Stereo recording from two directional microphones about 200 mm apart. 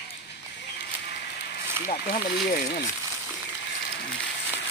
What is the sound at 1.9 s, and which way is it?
Speech, 45° left (ahead or behind).